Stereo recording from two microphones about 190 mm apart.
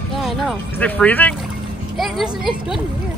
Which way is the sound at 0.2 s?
5° left (ahead or behind).